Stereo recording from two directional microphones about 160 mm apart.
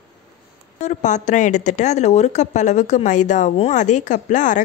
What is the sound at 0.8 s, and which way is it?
A woman's voice, 50° left (ahead or behind).